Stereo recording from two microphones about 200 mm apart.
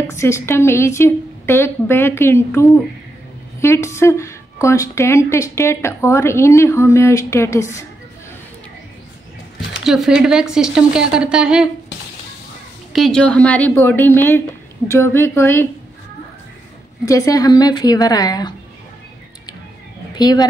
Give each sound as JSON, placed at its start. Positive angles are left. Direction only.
{"t": 0.1, "sound": "a woman's voice", "side_deg": 15}
{"t": 9.8, "sound": "a woman's voice", "side_deg": 0}
{"t": 12.9, "sound": "a woman's voice", "side_deg": 0}
{"t": 17.0, "sound": "a woman's voice", "side_deg": 15}
{"t": 20.2, "sound": "a woman's voice", "side_deg": 20}